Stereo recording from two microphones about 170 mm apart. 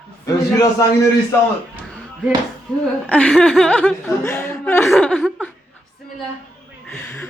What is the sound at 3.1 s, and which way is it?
Speech, 10° left (ahead or behind).